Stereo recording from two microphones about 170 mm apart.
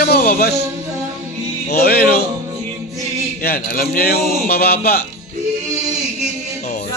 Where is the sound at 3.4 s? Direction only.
60° left (ahead or behind).